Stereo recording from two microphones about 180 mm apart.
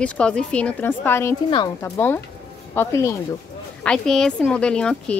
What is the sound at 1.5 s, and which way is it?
Speech, 25° left (ahead or behind).